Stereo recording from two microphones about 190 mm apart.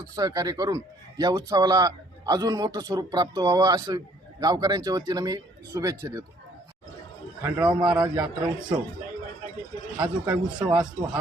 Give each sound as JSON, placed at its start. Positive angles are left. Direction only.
{"t": 0.0, "sound": "speech", "side_deg": -20}
{"t": 7.7, "sound": "speech", "side_deg": -25}
{"t": 10.0, "sound": "speech", "side_deg": -20}